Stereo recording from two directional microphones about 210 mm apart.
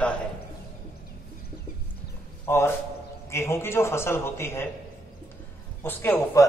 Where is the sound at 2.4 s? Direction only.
10° left (ahead or behind).